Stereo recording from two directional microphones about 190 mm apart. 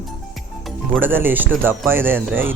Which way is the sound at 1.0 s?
10° right (ahead or behind).